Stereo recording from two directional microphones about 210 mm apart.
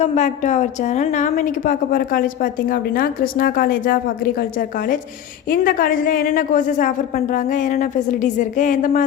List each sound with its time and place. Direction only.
0.0 s a woman's voice: 35° left (ahead or behind)
5.5 s a woman's voice: 40° left (ahead or behind)